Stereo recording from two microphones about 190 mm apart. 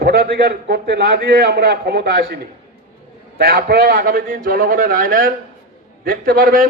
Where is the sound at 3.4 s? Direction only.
55° right (ahead or behind).